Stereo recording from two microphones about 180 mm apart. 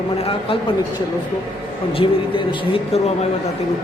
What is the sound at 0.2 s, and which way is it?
Speech, 30° left (ahead or behind).